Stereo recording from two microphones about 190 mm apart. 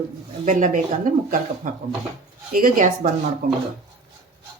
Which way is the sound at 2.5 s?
45° right (ahead or behind).